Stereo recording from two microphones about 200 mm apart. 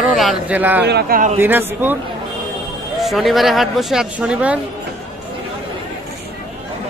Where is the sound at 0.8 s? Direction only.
50° right (ahead or behind).